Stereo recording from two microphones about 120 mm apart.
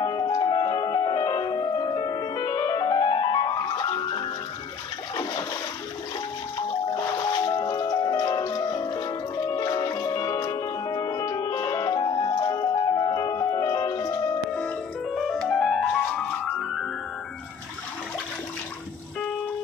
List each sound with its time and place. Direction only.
0.0 s music: 35° left (ahead or behind)
6.9 s music: 35° left (ahead or behind)
15.1 s music: centre (ahead or behind)